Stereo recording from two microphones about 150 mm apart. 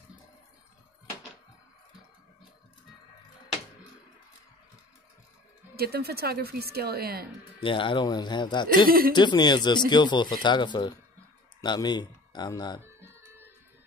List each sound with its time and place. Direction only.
5.8 s speech: 90° right
7.6 s speech: 35° left (ahead or behind)
8.8 s speech: 75° right (ahead or behind)
9.1 s speech: 30° left (ahead or behind)